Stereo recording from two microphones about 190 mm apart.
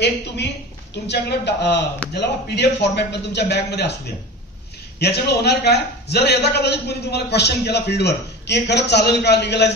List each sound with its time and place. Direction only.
1.0 s a man's voice: 60° left (ahead or behind)
4.9 s a man's voice: 60° left (ahead or behind)